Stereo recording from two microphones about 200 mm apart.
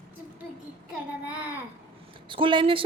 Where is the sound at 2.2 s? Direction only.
25° right (ahead or behind).